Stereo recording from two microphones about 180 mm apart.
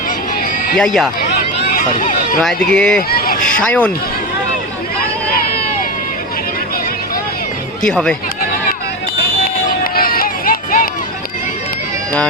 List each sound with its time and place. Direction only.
0.8 s speech: centre (ahead or behind)
1.7 s speech: 50° left (ahead or behind)
2.4 s speech: 5° left (ahead or behind)
7.8 s speech: 5° left (ahead or behind)
9.8 s music: 55° left (ahead or behind)